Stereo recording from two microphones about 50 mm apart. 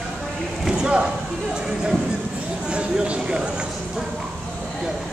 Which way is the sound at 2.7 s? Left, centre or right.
Right.